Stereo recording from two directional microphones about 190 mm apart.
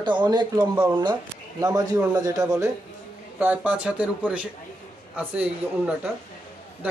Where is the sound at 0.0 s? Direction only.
25° right (ahead or behind).